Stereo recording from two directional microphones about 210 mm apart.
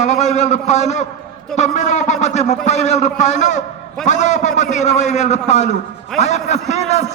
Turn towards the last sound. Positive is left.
turn(degrees=35)  # may be behind; listen again after turning